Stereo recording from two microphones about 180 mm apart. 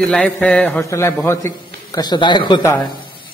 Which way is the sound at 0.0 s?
5° left (ahead or behind).